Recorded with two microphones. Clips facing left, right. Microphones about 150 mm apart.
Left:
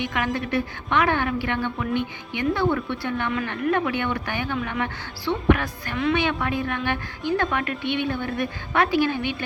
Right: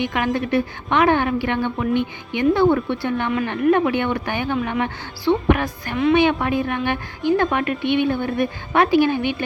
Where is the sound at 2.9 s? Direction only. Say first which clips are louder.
Right 4 dB; 25° right (ahead or behind).